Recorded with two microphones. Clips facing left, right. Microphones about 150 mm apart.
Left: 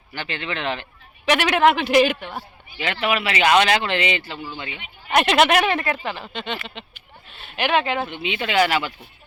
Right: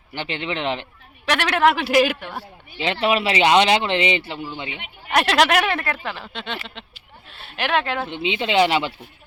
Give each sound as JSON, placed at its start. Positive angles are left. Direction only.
{"t": 0.1, "sound": "speech", "side_deg": -20}
{"t": 1.2, "sound": "speech", "side_deg": 0}
{"t": 2.7, "sound": "speech", "side_deg": -25}
{"t": 5.1, "sound": "speech", "side_deg": 0}
{"t": 8.0, "sound": "speech", "side_deg": -25}